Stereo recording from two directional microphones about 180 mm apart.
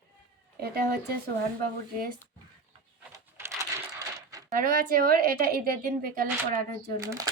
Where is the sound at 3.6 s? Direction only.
20° right (ahead or behind).